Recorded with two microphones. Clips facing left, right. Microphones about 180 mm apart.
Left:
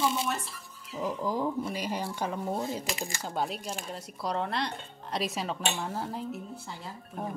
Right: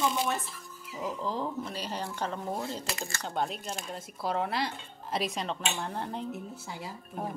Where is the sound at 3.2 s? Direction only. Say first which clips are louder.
Even; 5° left (ahead or behind).